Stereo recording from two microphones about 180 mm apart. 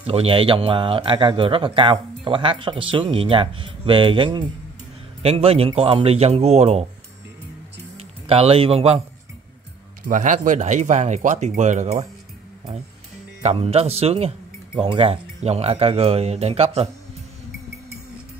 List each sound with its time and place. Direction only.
0.0 s speech: 35° right (ahead or behind)
8.3 s speech: 35° right (ahead or behind)
10.0 s speech: 45° right (ahead or behind)
13.4 s speech: 35° right (ahead or behind)